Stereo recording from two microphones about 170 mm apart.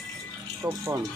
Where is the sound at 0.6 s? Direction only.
15° right (ahead or behind).